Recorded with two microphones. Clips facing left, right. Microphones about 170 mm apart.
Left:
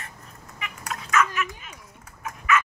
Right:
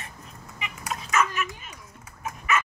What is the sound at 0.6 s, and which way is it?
Dog, 25° right (ahead or behind).